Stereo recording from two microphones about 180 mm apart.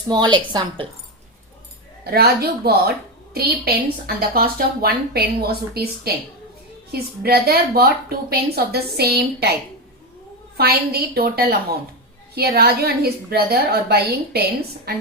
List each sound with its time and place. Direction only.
0.1 s a woman's voice: 25° right (ahead or behind)
2.0 s speech: 60° right (ahead or behind)
10.6 s speech: 60° right (ahead or behind)